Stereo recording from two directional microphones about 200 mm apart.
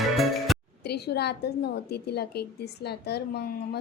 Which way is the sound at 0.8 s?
55° left (ahead or behind).